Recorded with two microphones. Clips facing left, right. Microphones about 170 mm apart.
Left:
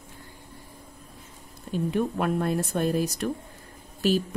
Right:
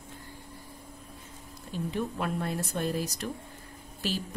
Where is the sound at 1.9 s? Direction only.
55° left (ahead or behind).